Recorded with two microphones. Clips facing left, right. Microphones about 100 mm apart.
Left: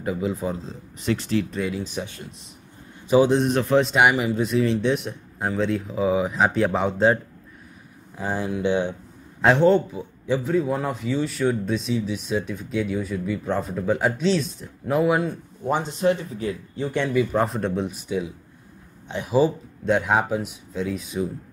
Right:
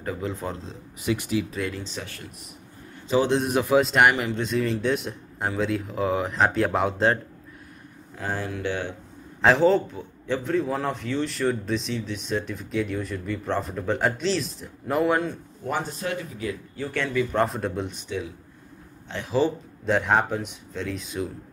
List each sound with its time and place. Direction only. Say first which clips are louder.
0.0 s speech: left 4 dB; 10° left (ahead or behind)
1.0 s speech: left 2 dB; 10° right (ahead or behind)
1.5 s speech: left 3 dB; 5° left (ahead or behind)
2.0 s speech: left 5 dB; 20° left (ahead or behind)
3.3 s speech: left 2 dB; 5° right (ahead or behind)
8.2 s speech: left 4 dB; 15° left (ahead or behind)
9.4 s speech: left 2 dB; centre (ahead or behind)
9.9 s speech: left 4 dB; 10° left (ahead or behind)
15.6 s speech: left 7 dB; 20° left (ahead or behind)
17.3 s speech: left 1 dB; centre (ahead or behind)
19.8 s speech: left 1 dB; centre (ahead or behind)